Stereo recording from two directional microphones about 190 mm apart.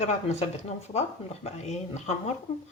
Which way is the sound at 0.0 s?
35° left (ahead or behind).